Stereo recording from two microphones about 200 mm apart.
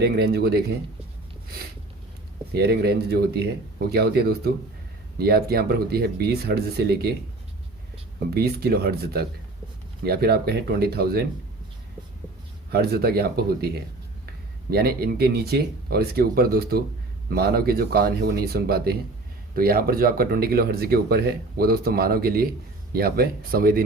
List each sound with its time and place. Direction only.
0.0 s speech: 55° right (ahead or behind)
2.5 s speech: 50° right (ahead or behind)
8.3 s speech: 50° right (ahead or behind)
12.7 s speech: 50° right (ahead or behind)
14.7 s speech: 50° right (ahead or behind)